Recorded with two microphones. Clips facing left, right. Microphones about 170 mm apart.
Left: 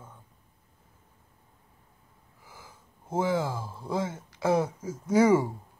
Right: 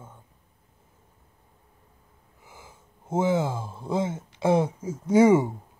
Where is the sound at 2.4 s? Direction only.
25° right (ahead or behind).